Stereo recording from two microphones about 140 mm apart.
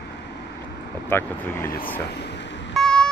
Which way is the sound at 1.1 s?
15° left (ahead or behind).